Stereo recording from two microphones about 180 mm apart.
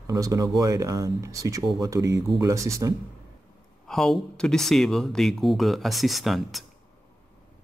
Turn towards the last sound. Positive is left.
turn(degrees=0)  # may be behind; listen again after turning